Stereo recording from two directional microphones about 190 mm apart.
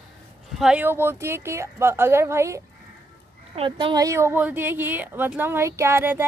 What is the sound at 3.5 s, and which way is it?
A woman's voice, 25° right (ahead or behind).